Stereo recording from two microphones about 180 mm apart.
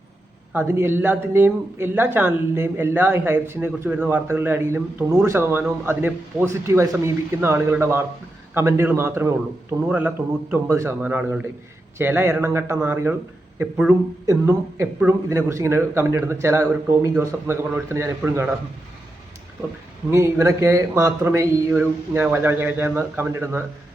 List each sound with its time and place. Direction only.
0.5 s a man's voice: 10° right (ahead or behind)
20.1 s a man's voice: 15° right (ahead or behind)